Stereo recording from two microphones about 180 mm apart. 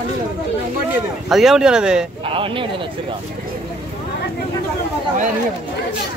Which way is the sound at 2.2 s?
30° right (ahead or behind).